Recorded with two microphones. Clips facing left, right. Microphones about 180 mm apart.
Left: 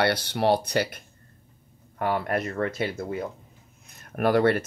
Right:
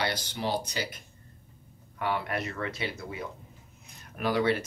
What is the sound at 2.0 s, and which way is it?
Speech, 45° left (ahead or behind).